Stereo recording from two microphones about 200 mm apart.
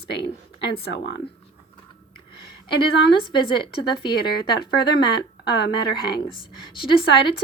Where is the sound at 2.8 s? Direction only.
25° left (ahead or behind).